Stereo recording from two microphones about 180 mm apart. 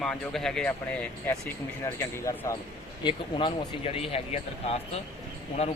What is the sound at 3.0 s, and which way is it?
Speech, 25° left (ahead or behind).